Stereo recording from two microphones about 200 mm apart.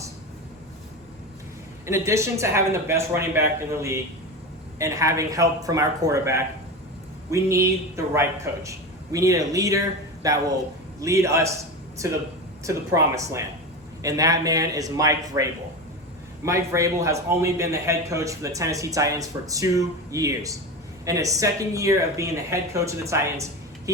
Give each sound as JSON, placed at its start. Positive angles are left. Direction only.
{"t": 1.9, "sound": "a man's voice", "side_deg": -15}